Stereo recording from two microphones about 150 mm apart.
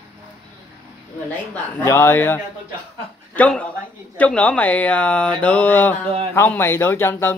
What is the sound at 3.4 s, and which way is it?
Speech, 10° left (ahead or behind).